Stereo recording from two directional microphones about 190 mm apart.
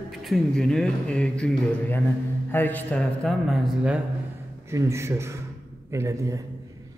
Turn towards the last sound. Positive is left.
turn(degrees=-15)  # may be behind; listen again after turning